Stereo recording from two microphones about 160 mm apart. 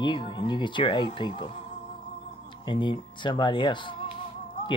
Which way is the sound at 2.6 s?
30° left (ahead or behind).